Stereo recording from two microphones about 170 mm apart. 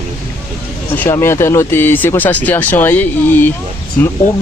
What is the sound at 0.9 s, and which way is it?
Speech, 15° left (ahead or behind).